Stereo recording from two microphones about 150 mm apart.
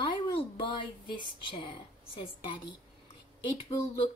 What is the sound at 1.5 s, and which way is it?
A woman's voice, 35° left (ahead or behind).